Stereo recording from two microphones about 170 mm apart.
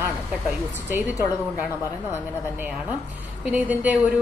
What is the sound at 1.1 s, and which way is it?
Speech, 20° left (ahead or behind).